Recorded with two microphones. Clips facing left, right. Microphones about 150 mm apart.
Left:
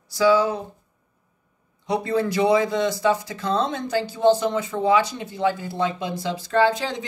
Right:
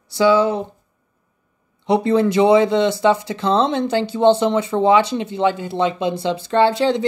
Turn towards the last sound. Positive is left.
turn(degrees=-75)  # may be behind; listen again after turning